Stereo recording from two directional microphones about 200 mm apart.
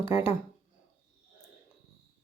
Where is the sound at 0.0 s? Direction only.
30° left (ahead or behind).